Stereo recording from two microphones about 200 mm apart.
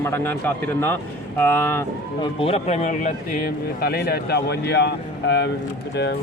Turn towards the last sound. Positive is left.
turn(degrees=60)  # may be behind; listen again after turning